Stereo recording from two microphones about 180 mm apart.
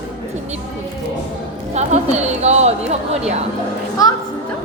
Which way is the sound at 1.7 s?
40° right (ahead or behind).